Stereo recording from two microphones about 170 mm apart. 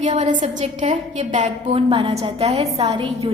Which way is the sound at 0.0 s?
40° right (ahead or behind).